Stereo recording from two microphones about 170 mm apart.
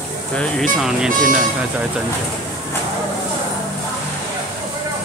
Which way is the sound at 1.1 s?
55° right (ahead or behind).